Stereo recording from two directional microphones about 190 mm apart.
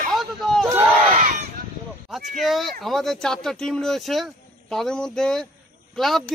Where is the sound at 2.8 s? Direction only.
Centre (ahead or behind).